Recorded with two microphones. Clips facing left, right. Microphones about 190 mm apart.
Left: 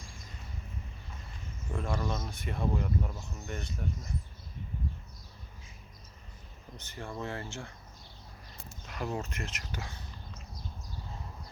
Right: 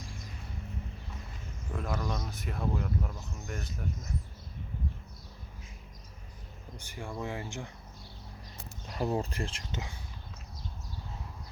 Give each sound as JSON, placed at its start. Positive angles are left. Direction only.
{"t": 1.7, "sound": "speech", "side_deg": 0}
{"t": 6.7, "sound": "speech", "side_deg": -10}
{"t": 8.9, "sound": "speech", "side_deg": -35}